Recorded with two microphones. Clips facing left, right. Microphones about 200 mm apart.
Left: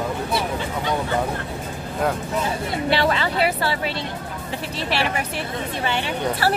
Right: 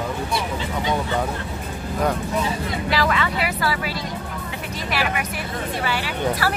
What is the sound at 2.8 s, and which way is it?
Speech, 30° left (ahead or behind).